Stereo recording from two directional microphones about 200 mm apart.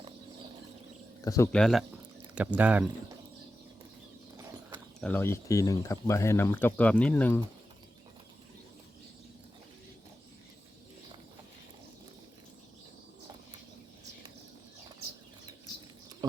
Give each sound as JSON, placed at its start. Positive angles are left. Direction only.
{"t": 1.2, "sound": "speech", "side_deg": 15}
{"t": 1.5, "sound": "speech", "side_deg": 0}
{"t": 4.9, "sound": "speech", "side_deg": 10}